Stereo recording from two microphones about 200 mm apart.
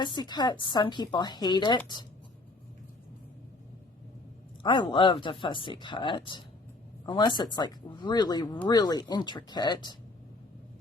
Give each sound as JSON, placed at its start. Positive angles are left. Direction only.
{"t": 0.0, "sound": "a woman's voice", "side_deg": 20}
{"t": 4.6, "sound": "a woman's voice", "side_deg": 25}